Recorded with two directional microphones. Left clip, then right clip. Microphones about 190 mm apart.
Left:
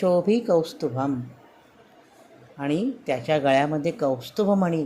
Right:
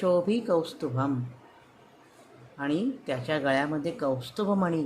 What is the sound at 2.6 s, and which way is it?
Speech, 15° left (ahead or behind).